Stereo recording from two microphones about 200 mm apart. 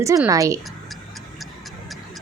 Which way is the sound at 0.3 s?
15° right (ahead or behind).